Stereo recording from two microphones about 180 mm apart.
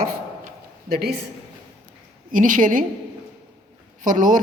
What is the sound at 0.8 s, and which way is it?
Speech, 60° right (ahead or behind).